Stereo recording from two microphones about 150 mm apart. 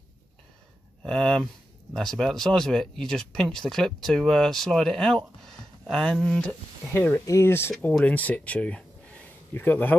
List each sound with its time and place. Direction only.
1.0 s speech: 5° left (ahead or behind)